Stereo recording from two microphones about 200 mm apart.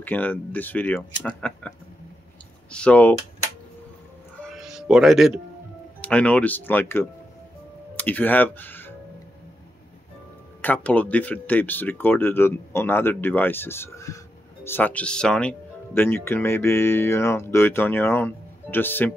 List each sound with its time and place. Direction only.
0.0 s speech: 10° left (ahead or behind)
2.7 s speech: 5° left (ahead or behind)
4.4 s music: centre (ahead or behind)
5.9 s speech: 5° left (ahead or behind)
10.6 s speech: 10° left (ahead or behind)